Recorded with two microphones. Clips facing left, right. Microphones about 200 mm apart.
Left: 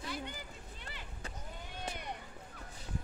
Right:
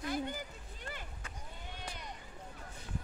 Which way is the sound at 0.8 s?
50° right (ahead or behind).